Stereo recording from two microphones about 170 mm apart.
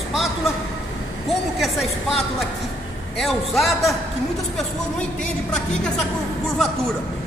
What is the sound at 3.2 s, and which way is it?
Speech, centre (ahead or behind).